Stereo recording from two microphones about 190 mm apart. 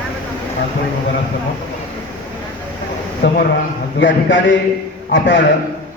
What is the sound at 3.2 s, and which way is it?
Mantra, 70° left (ahead or behind).